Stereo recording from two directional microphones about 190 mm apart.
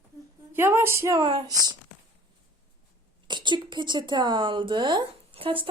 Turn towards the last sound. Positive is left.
turn(degrees=-30)  # may be behind; listen again after turning